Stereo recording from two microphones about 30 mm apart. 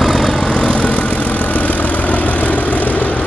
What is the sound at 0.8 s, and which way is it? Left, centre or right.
Vehicle, left.